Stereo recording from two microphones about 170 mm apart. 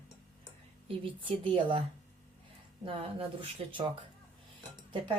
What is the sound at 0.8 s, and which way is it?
Speech, 30° right (ahead or behind).